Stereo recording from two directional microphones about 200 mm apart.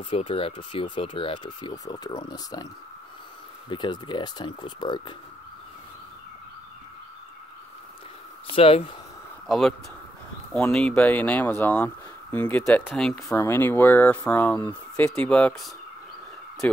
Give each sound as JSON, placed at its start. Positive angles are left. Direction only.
{"t": 0.1, "sound": "speech", "side_deg": 30}
{"t": 8.5, "sound": "speech", "side_deg": 30}
{"t": 9.5, "sound": "speech", "side_deg": 0}